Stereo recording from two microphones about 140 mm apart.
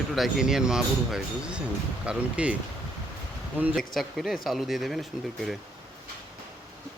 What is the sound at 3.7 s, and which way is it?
Speech, centre (ahead or behind).